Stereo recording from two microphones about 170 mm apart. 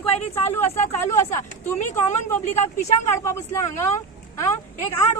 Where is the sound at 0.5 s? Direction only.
15° left (ahead or behind).